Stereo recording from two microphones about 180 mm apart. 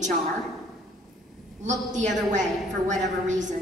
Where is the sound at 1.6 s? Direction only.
40° right (ahead or behind).